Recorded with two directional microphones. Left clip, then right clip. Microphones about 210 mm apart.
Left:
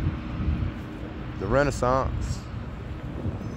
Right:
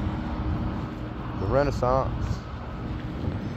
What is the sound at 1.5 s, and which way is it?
Speech, 60° left (ahead or behind).